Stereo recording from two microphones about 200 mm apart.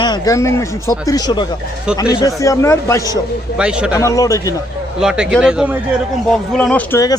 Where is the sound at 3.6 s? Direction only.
5° right (ahead or behind).